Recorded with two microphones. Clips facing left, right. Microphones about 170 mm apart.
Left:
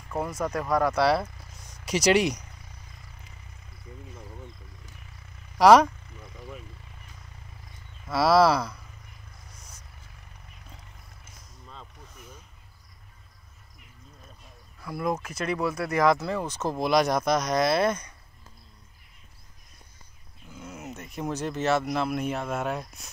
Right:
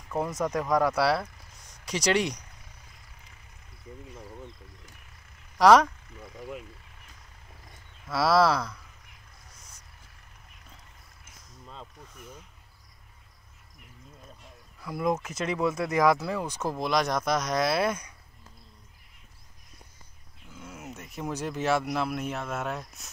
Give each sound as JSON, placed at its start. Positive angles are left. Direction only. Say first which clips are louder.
{"t": 0.3, "sound": "speech", "louder": "even", "side_deg": -15}
{"t": 1.9, "sound": "speech", "louder": "left 4 dB", "side_deg": 5}
{"t": 5.6, "sound": "speech", "louder": "left 2 dB", "side_deg": 5}
{"t": 8.1, "sound": "speech", "louder": "left 3 dB", "side_deg": 0}
{"t": 14.8, "sound": "speech", "louder": "right 1 dB", "side_deg": -15}
{"t": 16.7, "sound": "speech", "louder": "left 5 dB", "side_deg": 5}
{"t": 20.5, "sound": "a sound", "louder": "left 3 dB", "side_deg": 5}
{"t": 20.9, "sound": "speech", "louder": "left 2 dB", "side_deg": -5}